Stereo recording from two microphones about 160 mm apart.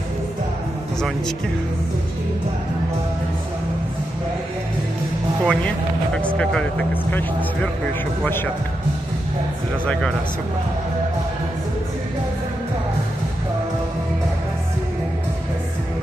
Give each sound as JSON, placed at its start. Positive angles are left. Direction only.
{"t": 5.4, "sound": "speech", "side_deg": 5}